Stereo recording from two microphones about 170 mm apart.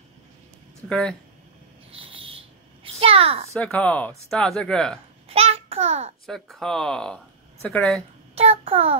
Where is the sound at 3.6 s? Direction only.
10° left (ahead or behind).